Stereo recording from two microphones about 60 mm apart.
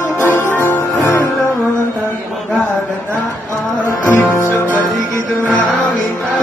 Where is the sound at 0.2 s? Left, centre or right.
Left.